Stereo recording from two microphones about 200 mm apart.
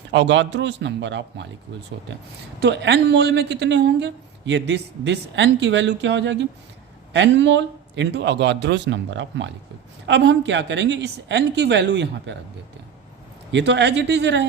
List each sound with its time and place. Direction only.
0.1 s a woman's voice: 60° right (ahead or behind)
2.6 s a woman's voice: 60° right (ahead or behind)
13.5 s a woman's voice: 60° right (ahead or behind)